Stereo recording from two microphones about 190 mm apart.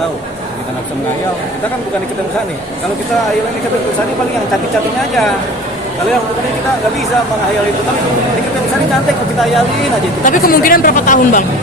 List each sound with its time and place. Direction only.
10.2 s a woman's voice: 45° left (ahead or behind)